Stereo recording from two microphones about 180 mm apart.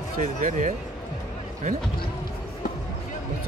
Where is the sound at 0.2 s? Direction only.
45° right (ahead or behind).